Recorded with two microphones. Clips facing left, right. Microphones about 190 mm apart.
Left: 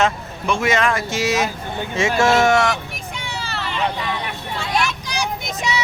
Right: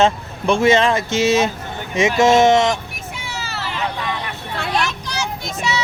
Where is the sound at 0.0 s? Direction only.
30° right (ahead or behind).